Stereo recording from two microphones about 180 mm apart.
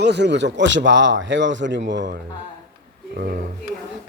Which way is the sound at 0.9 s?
90° right.